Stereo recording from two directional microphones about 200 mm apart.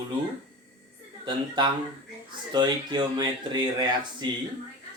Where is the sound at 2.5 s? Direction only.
20° right (ahead or behind).